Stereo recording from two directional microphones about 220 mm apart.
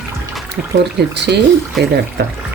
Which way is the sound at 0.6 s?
40° right (ahead or behind).